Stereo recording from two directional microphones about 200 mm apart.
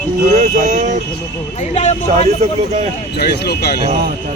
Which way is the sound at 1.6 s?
35° left (ahead or behind).